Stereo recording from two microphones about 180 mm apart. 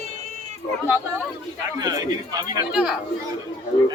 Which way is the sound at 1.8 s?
20° right (ahead or behind).